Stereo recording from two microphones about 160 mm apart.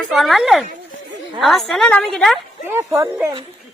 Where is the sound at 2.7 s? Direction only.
15° right (ahead or behind).